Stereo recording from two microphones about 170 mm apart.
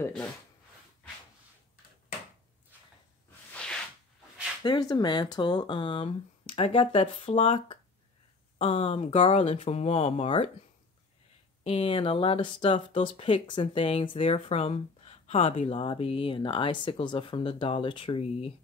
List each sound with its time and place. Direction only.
0.0 s speech: 15° left (ahead or behind)
3.5 s a sound: 5° left (ahead or behind)
4.6 s speech: 25° left (ahead or behind)
11.6 s speech: 35° left (ahead or behind)